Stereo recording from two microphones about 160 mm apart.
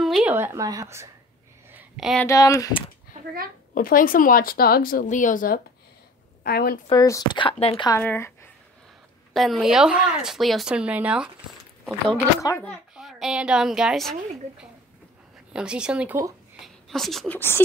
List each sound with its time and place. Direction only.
0.0 s a sound: centre (ahead or behind)
0.3 s speech: 15° right (ahead or behind)
1.7 s a sound: 5° right (ahead or behind)
2.2 s speech: 20° left (ahead or behind)
3.7 s speech: 60° left (ahead or behind)
5.0 s speech: 50° left (ahead or behind)
6.4 s a woman's voice: 70° left (ahead or behind)
6.9 s speech: 25° left (ahead or behind)
8.0 s a woman's voice: 15° left (ahead or behind)
9.3 s a child's voice: centre (ahead or behind)
16.6 s a woman's voice: centre (ahead or behind)